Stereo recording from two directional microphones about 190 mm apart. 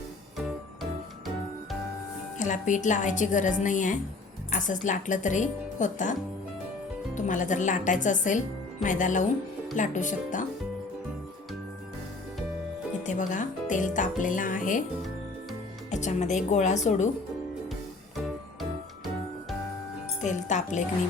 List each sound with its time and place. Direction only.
2.4 s speech: 40° left (ahead or behind)
7.2 s speech: 40° left (ahead or behind)
12.9 s speech: 40° left (ahead or behind)
15.9 s speech: 40° left (ahead or behind)
20.2 s speech: 40° left (ahead or behind)